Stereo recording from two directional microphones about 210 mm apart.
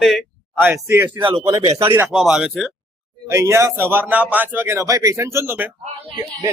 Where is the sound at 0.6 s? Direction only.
10° right (ahead or behind).